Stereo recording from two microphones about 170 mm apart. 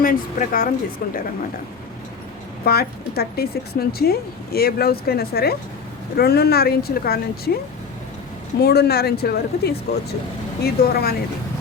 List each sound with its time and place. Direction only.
0.0 s speech: 55° left (ahead or behind)
2.6 s speech: 65° left (ahead or behind)
8.6 s speech: 70° left (ahead or behind)